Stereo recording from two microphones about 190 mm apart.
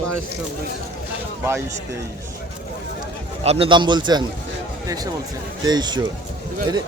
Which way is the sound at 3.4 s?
30° right (ahead or behind).